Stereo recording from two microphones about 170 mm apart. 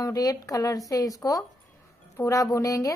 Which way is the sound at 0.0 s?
20° left (ahead or behind).